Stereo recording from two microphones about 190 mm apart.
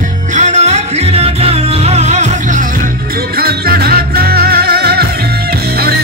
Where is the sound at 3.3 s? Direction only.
55° right (ahead or behind).